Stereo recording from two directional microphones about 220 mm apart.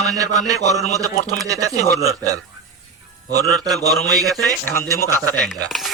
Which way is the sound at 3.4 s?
5° left (ahead or behind).